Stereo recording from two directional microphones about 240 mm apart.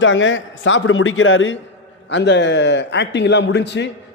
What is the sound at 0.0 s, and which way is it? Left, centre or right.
A man's voice, left.